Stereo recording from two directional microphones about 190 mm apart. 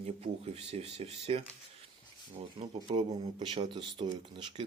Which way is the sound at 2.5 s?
30° right (ahead or behind).